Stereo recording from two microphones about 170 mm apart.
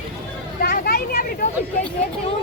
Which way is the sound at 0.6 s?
65° left (ahead or behind).